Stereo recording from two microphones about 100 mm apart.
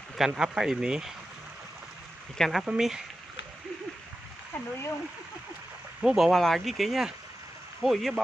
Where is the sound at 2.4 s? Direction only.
Centre (ahead or behind).